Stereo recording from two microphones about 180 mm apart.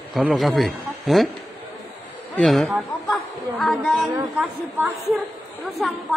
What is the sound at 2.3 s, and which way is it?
Speech, centre (ahead or behind).